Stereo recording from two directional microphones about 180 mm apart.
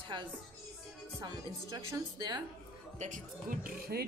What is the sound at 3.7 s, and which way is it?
Speech, 60° right (ahead or behind).